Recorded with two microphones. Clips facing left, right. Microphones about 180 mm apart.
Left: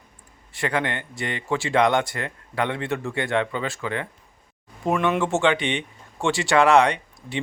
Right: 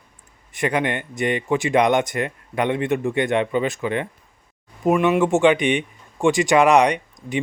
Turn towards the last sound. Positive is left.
turn(degrees=-15)  # may be behind; listen again after turning